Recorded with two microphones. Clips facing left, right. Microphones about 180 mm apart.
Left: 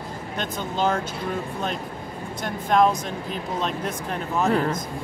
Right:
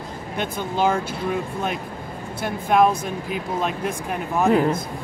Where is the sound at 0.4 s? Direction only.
10° right (ahead or behind).